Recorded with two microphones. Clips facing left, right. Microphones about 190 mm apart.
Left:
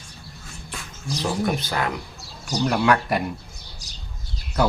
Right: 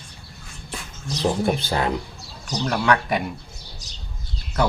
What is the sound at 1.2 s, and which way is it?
Speech, 30° right (ahead or behind).